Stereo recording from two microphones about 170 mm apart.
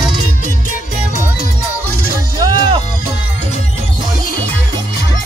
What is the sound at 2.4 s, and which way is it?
Music, 25° right (ahead or behind).